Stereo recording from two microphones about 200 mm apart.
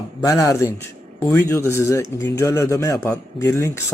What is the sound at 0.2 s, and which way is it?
Speech, 15° left (ahead or behind).